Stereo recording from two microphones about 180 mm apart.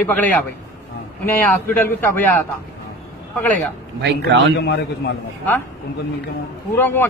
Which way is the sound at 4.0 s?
70° right (ahead or behind).